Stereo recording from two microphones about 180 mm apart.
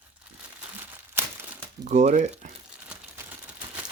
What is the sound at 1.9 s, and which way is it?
Speech, 45° right (ahead or behind).